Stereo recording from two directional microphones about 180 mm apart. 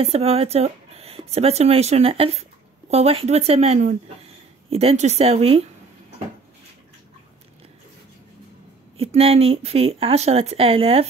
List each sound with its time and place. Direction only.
0.0 s speech: 35° right (ahead or behind)
8.9 s speech: 35° right (ahead or behind)